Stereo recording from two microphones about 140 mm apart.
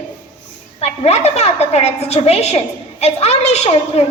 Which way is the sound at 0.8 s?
50° left (ahead or behind).